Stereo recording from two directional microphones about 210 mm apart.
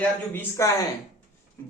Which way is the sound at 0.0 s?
10° left (ahead or behind).